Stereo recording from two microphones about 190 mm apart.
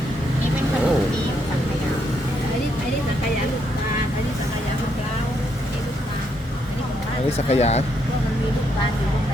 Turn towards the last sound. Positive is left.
turn(degrees=35)  # may be behind; listen again after turning